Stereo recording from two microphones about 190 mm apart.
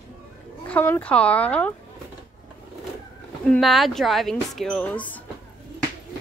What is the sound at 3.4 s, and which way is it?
Speech, centre (ahead or behind).